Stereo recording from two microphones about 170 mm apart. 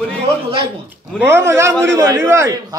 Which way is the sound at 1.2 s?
15° right (ahead or behind).